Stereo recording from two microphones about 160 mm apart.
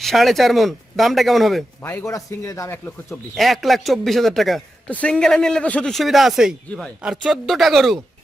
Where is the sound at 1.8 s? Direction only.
15° left (ahead or behind).